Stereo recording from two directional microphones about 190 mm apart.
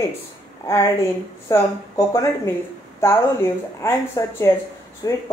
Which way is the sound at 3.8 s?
15° left (ahead or behind).